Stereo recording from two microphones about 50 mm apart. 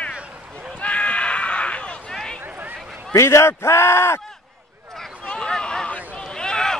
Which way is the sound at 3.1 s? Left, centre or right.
Left.